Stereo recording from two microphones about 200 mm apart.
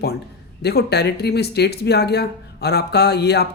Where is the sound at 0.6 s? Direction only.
55° left (ahead or behind).